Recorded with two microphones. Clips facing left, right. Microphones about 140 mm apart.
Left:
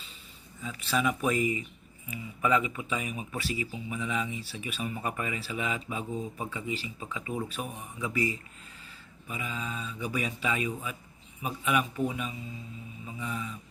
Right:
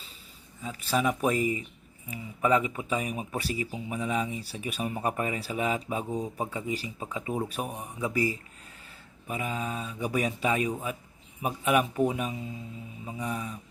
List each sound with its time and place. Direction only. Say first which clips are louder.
0.6 s speech: right 2 dB; 40° right (ahead or behind)
9.2 s speech: right 5 dB; 50° right (ahead or behind)